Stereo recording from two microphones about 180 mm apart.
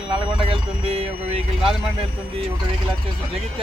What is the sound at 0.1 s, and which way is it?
Speech, 30° right (ahead or behind).